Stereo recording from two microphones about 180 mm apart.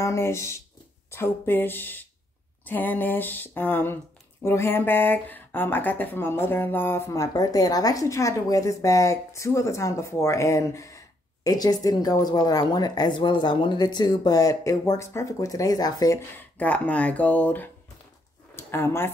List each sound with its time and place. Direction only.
0.0 s a woman's voice: 15° left (ahead or behind)